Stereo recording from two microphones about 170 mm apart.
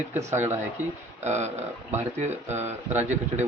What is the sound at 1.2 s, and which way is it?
Speech, 40° right (ahead or behind).